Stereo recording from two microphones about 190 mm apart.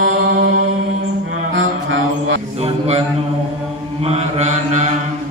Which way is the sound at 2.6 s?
30° right (ahead or behind).